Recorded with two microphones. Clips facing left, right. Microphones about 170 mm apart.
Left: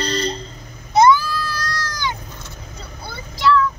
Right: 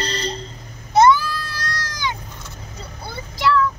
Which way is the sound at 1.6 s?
20° right (ahead or behind).